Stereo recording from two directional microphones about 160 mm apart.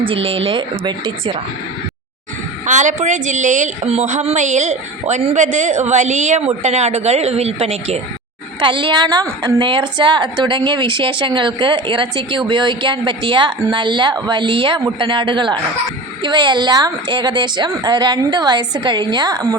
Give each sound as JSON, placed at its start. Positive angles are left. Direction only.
{"t": 0.0, "sound": "a woman's voice", "side_deg": -35}
{"t": 2.6, "sound": "a woman's voice", "side_deg": -50}